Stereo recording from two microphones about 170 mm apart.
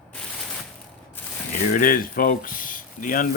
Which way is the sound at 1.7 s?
55° left (ahead or behind).